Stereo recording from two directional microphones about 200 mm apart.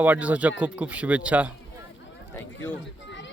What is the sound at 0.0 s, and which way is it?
Speech, 5° right (ahead or behind).